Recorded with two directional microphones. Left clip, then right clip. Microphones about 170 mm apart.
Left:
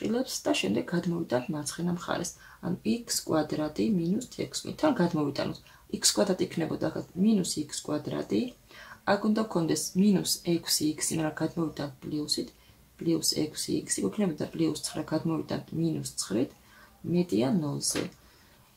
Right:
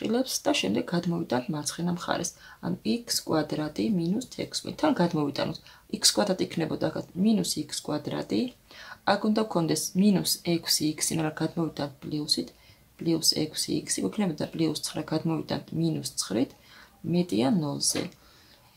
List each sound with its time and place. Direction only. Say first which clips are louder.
0.0 s speech: right 3 dB; 25° right (ahead or behind)